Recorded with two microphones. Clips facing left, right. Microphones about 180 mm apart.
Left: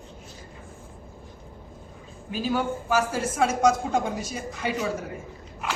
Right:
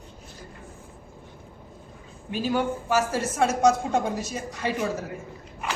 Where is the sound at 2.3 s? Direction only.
Centre (ahead or behind).